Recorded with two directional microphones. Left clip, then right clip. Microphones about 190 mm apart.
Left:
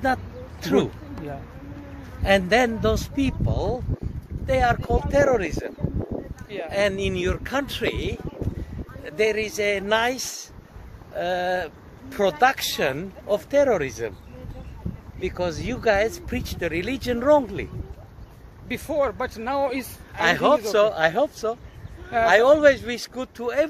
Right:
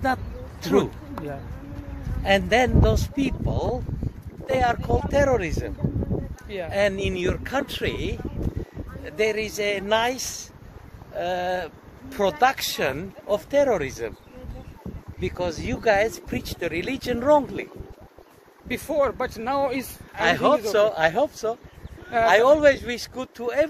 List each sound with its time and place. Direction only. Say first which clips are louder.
0.0 s vehicle: left 1 dB; 10° left (ahead or behind)
2.2 s speech: left 1 dB; 20° left (ahead or behind)
6.7 s speech: even; 25° left (ahead or behind)
15.1 s speech: left 1 dB; 15° left (ahead or behind)
18.7 s speech: right 1 dB; 15° right (ahead or behind)
20.2 s speech: left 1 dB; 30° left (ahead or behind)